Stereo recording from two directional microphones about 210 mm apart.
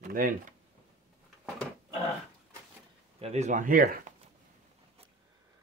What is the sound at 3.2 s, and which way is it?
Speech, 30° right (ahead or behind).